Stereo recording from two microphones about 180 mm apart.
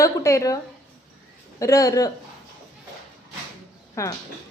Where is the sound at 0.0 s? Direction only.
15° left (ahead or behind).